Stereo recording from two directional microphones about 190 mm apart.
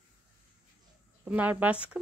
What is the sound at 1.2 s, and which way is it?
Speech, 10° right (ahead or behind).